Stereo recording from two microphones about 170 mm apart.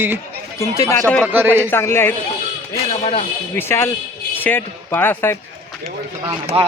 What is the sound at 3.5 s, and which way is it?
A man's voice, 15° left (ahead or behind).